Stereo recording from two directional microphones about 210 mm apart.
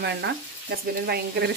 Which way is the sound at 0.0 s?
55° right (ahead or behind).